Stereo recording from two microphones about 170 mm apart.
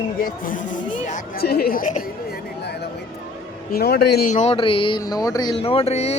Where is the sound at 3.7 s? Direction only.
70° left (ahead or behind).